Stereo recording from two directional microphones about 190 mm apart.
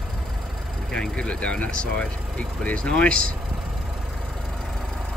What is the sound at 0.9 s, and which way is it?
Speech, 5° left (ahead or behind).